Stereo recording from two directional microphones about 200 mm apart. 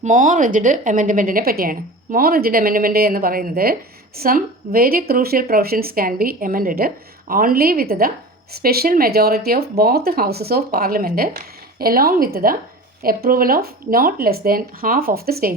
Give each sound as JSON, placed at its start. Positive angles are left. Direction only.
{"t": 0.0, "sound": "speech", "side_deg": -40}